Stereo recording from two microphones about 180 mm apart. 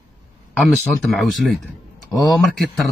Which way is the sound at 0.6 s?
Centre (ahead or behind).